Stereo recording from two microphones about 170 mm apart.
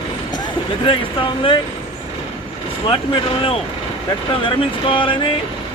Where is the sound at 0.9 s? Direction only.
30° left (ahead or behind).